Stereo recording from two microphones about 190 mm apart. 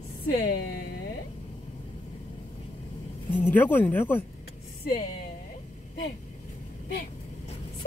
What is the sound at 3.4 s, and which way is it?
Speech, 10° left (ahead or behind).